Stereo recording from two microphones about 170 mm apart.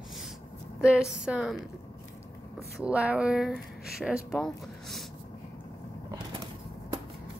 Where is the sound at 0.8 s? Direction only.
5° right (ahead or behind).